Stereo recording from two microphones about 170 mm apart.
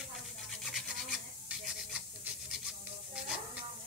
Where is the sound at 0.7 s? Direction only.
Centre (ahead or behind).